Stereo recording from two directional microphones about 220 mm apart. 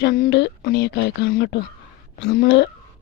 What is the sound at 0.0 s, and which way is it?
A woman's voice, 50° left (ahead or behind).